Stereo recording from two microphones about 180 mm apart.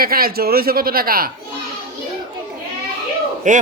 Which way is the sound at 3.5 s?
45° right (ahead or behind).